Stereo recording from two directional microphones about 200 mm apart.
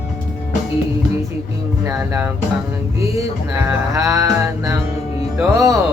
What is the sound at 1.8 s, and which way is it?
Speech, 10° right (ahead or behind).